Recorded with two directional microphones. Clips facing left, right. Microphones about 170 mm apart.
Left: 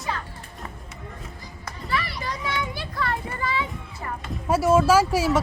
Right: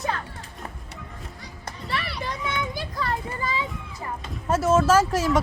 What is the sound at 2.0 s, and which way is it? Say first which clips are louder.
Children playing: left 1 dB; 65° right (ahead or behind).